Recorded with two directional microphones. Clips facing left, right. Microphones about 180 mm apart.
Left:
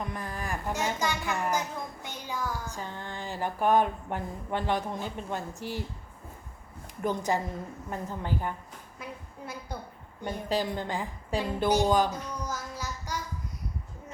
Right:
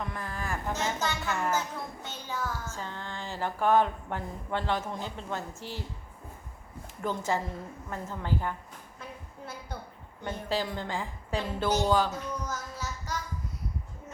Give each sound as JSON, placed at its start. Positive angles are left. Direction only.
{"t": 0.0, "sound": "a child's voice", "side_deg": 20}
{"t": 7.0, "sound": "a woman's voice", "side_deg": 15}
{"t": 10.2, "sound": "a woman's voice", "side_deg": 15}